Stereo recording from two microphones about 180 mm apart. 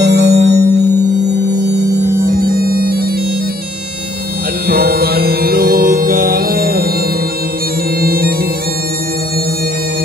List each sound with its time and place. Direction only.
0.0 s music: 70° right (ahead or behind)
0.3 s music: 40° right (ahead or behind)
2.2 s bagpipes: 55° right (ahead or behind)
4.6 s music: 60° right (ahead or behind)
8.0 s bagpipes: 60° right (ahead or behind)